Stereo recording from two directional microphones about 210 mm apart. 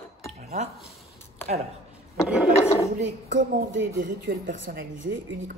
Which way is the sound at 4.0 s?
40° right (ahead or behind).